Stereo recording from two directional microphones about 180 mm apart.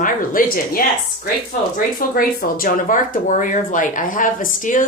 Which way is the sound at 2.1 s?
50° left (ahead or behind).